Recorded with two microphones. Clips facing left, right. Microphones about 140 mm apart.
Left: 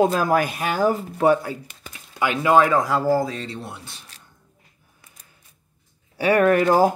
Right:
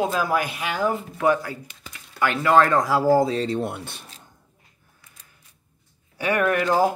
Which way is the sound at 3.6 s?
55° right (ahead or behind).